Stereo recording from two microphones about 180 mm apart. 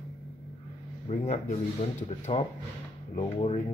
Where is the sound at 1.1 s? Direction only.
45° left (ahead or behind).